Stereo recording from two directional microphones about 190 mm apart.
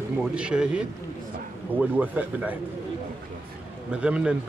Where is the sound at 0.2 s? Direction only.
5° right (ahead or behind).